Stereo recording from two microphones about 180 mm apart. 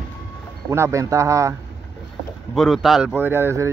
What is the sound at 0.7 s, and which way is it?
Speech, 15° right (ahead or behind).